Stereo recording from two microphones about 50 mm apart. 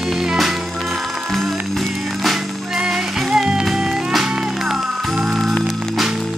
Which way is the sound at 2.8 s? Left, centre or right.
Centre.